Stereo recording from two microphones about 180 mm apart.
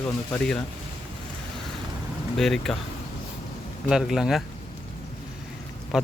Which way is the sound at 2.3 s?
Centre (ahead or behind).